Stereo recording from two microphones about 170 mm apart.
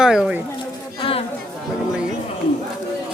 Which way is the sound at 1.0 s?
35° left (ahead or behind).